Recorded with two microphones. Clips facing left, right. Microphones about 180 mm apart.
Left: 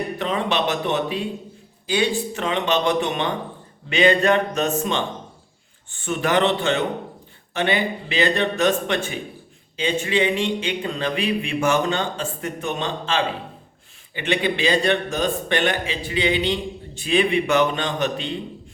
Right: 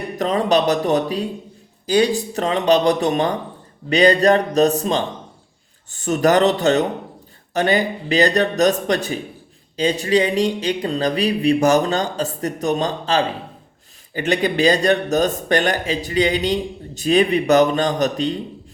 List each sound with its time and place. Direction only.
0.2 s a man's voice: 40° right (ahead or behind)